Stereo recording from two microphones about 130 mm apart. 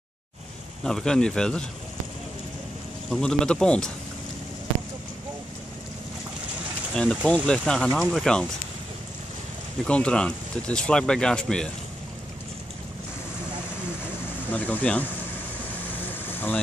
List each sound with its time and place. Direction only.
0.8 s speech: 5° left (ahead or behind)
3.1 s speech: 5° left (ahead or behind)
6.9 s speech: 5° left (ahead or behind)
9.8 s speech: 10° left (ahead or behind)
14.5 s speech: 10° left (ahead or behind)
16.3 s a sound: 15° left (ahead or behind)